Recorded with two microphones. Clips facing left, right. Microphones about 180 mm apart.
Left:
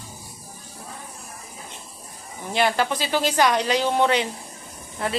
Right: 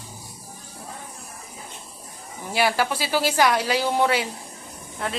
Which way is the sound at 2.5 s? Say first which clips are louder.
Left 1 dB; 5° right (ahead or behind).